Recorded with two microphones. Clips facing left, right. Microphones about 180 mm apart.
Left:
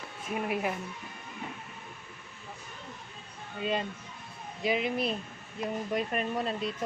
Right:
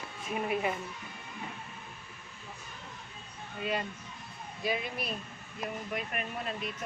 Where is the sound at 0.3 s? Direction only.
5° left (ahead or behind).